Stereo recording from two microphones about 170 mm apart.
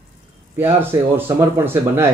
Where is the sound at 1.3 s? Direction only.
15° right (ahead or behind).